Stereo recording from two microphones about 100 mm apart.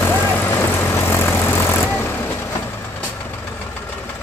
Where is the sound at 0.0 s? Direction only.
25° left (ahead or behind).